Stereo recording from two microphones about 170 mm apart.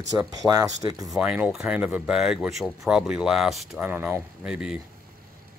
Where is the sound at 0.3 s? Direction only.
20° right (ahead or behind).